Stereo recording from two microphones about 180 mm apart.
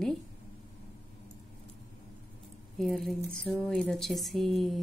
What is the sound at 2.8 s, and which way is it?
Music, centre (ahead or behind).